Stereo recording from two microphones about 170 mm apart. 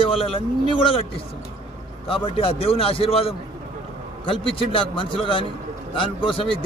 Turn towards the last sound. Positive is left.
turn(degrees=30)  # may be behind; listen again after turning